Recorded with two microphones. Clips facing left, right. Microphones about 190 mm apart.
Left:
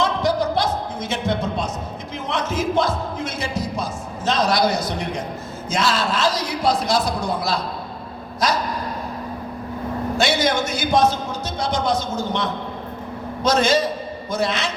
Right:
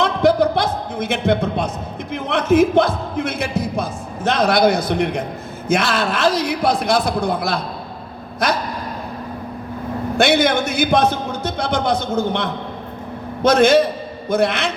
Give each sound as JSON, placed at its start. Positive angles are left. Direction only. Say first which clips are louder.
{"t": 0.0, "sound": "a sound", "louder": "right 5 dB", "side_deg": -60}
{"t": 2.1, "sound": "a man's voice", "louder": "right 10 dB", "side_deg": -60}
{"t": 10.2, "sound": "a man's voice", "louder": "right 5 dB", "side_deg": -60}